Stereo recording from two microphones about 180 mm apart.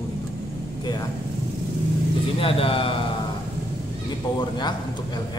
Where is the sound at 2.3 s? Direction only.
30° left (ahead or behind).